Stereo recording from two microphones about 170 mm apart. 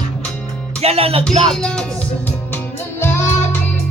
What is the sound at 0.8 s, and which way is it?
Speech, 35° right (ahead or behind).